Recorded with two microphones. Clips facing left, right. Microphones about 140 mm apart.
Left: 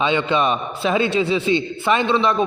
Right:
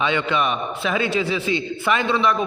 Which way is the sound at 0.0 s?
20° left (ahead or behind).